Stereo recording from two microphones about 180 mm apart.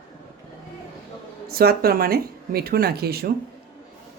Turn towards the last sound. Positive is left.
turn(degrees=-60)  # may be behind; listen again after turning